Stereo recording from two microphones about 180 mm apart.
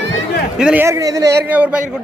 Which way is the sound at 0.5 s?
5° right (ahead or behind).